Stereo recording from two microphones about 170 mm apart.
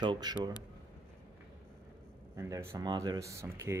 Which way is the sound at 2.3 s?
20° right (ahead or behind).